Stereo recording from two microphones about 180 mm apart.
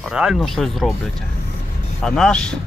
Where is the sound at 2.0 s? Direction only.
5° left (ahead or behind).